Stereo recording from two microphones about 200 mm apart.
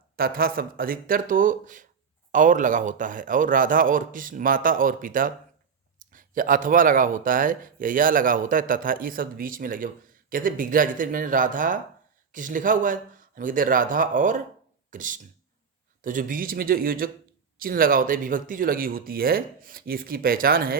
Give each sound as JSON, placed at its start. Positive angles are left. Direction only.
{"t": 0.2, "sound": "speech", "side_deg": -45}